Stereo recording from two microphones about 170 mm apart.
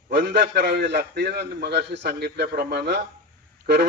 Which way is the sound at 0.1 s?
90° right.